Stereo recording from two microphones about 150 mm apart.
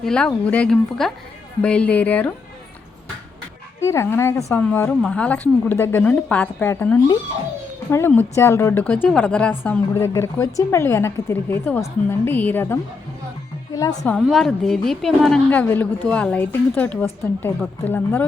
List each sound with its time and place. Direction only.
0.0 s a woman's voice: 5° left (ahead or behind)
3.8 s a woman's voice: 20° left (ahead or behind)
14.2 s speech: centre (ahead or behind)
15.4 s a woman's voice: 10° left (ahead or behind)